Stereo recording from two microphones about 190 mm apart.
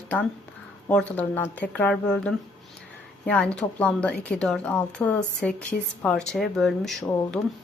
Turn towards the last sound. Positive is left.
turn(degrees=5)  # may be behind; listen again after turning